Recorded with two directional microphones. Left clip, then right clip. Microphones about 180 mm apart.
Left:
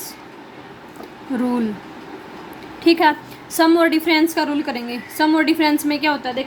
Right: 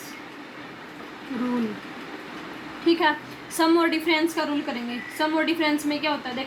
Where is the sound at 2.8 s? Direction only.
55° left (ahead or behind).